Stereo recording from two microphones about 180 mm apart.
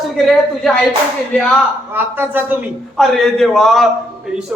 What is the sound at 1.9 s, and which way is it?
Speech, 10° right (ahead or behind).